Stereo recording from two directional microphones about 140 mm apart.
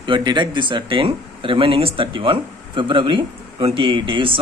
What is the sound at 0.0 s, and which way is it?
Speech, 35° right (ahead or behind).